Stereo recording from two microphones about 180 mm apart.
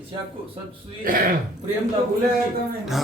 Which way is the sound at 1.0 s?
50° right (ahead or behind).